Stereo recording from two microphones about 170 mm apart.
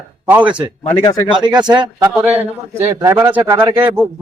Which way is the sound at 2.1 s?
10° right (ahead or behind).